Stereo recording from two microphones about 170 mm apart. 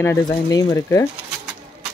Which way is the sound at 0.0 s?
20° left (ahead or behind).